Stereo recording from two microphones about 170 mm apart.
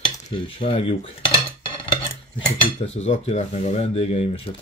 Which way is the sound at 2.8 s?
40° left (ahead or behind).